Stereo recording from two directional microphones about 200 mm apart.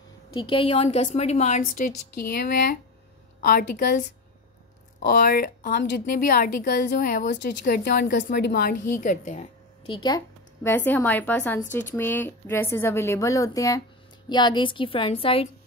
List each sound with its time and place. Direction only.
0.3 s a woman's voice: 25° left (ahead or behind); by 4.0 s 50° left (ahead or behind)
5.0 s a woman's voice: 50° left (ahead or behind)
9.0 s a woman's voice: 40° left (ahead or behind)
9.8 s a woman's voice: 20° left (ahead or behind)